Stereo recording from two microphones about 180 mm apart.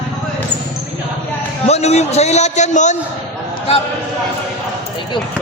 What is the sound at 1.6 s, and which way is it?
A man's voice, 35° left (ahead or behind).